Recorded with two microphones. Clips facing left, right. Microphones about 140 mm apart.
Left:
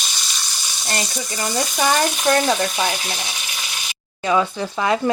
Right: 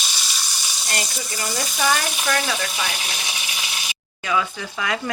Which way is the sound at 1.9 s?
35° left (ahead or behind).